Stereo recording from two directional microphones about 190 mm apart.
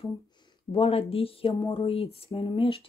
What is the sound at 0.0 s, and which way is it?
Speech, 25° left (ahead or behind).